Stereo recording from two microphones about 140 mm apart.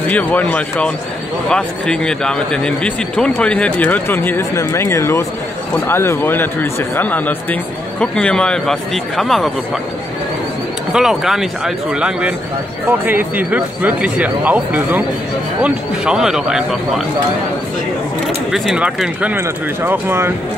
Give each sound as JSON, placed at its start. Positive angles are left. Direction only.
{"t": 0.1, "sound": "speech", "side_deg": 10}
{"t": 10.9, "sound": "a man's voice", "side_deg": -5}
{"t": 18.2, "sound": "a man's voice", "side_deg": 0}